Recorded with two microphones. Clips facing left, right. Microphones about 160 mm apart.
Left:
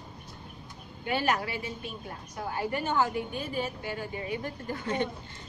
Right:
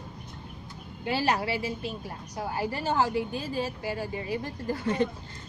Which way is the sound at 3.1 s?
90° right.